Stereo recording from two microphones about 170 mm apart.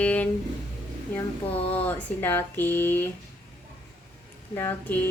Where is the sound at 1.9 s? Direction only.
10° left (ahead or behind).